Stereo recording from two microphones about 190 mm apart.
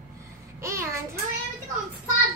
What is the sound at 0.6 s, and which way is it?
Speech, 15° right (ahead or behind).